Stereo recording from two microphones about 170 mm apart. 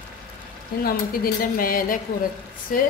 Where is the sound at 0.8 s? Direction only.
60° left (ahead or behind).